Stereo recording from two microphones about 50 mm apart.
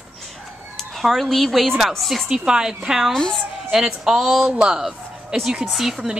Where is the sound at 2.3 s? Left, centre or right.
Centre.